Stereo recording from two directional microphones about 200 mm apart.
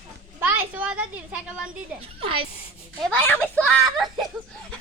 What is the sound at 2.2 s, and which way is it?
Speech, 25° right (ahead or behind).